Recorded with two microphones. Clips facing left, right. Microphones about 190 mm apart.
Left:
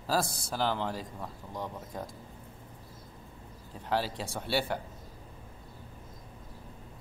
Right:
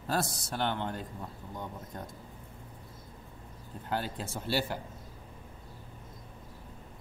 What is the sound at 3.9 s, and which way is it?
Speech, centre (ahead or behind).